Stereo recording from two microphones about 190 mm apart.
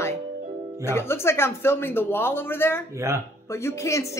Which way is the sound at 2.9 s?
15° right (ahead or behind).